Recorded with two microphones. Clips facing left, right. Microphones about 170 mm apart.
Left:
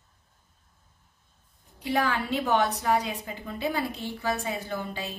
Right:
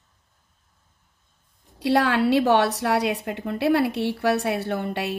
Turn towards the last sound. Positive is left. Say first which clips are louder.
# right 7 dB
turn(degrees=-70)  # may be behind; listen again after turning